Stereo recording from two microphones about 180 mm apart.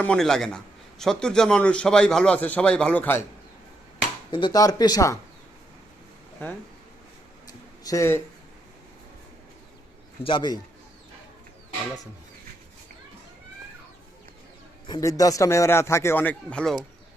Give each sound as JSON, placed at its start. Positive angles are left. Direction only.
{"t": 0.0, "sound": "a man's voice", "side_deg": 5}
{"t": 4.3, "sound": "speech", "side_deg": 25}
{"t": 6.4, "sound": "a man's voice", "side_deg": 10}
{"t": 7.9, "sound": "a man's voice", "side_deg": 15}
{"t": 10.2, "sound": "speech", "side_deg": 25}
{"t": 14.8, "sound": "a man's voice", "side_deg": 20}